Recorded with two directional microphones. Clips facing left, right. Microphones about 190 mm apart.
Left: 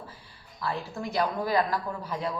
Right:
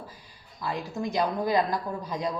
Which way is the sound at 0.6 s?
15° right (ahead or behind).